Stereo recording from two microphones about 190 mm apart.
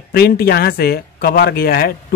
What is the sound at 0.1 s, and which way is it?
Speech, 55° left (ahead or behind).